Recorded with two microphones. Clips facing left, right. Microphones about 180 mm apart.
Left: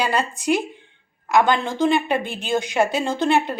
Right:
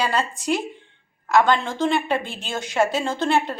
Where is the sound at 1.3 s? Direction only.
15° left (ahead or behind).